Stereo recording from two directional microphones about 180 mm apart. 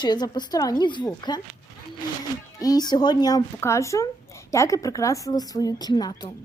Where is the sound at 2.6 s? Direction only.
20° left (ahead or behind).